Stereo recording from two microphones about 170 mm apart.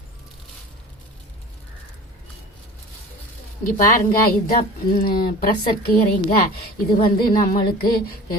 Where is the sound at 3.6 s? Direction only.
55° left (ahead or behind).